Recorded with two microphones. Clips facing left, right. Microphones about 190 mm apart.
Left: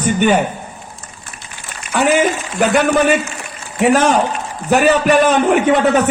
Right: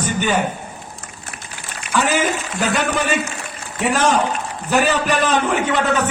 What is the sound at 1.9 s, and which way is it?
A man's voice, 55° left (ahead or behind).